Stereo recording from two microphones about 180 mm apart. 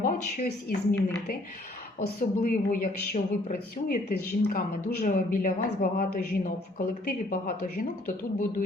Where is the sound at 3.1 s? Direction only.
50° left (ahead or behind).